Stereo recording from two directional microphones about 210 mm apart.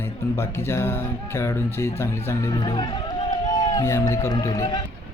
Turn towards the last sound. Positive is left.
turn(degrees=15)  # may be behind; listen again after turning